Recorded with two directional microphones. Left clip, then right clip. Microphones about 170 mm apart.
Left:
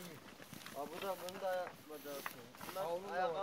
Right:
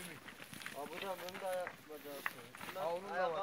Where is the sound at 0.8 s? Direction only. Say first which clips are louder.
Left 2 dB; 45° right (ahead or behind).